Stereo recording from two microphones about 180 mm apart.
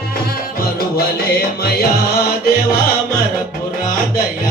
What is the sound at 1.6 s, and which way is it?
Music, 60° left (ahead or behind).